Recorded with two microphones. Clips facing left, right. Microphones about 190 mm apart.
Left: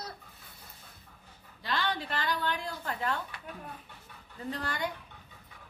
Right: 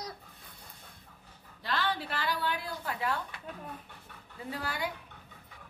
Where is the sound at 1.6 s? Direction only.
Centre (ahead or behind).